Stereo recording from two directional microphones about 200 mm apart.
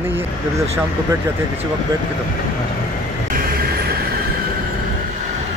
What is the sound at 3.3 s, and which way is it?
Vehicle, 45° right (ahead or behind).